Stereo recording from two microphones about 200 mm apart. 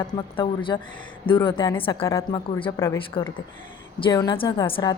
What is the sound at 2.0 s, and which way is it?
Speech, 15° left (ahead or behind).